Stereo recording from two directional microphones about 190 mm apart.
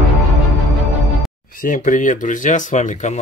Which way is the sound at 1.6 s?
45° left (ahead or behind).